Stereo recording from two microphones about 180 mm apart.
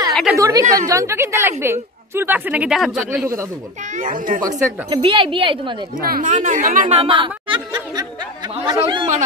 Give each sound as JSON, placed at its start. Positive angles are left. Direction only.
{"t": 0.1, "sound": "chatter", "side_deg": 0}
{"t": 0.4, "sound": "speech", "side_deg": -20}
{"t": 3.9, "sound": "speech", "side_deg": -45}
{"t": 4.4, "sound": "speech", "side_deg": -20}
{"t": 6.0, "sound": "speech", "side_deg": -50}
{"t": 7.0, "sound": "speech", "side_deg": -30}